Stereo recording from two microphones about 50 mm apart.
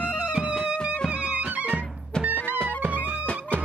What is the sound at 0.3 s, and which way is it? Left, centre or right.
Music, right.